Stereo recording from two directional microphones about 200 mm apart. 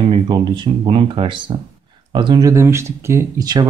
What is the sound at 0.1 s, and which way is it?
Speech, 25° right (ahead or behind).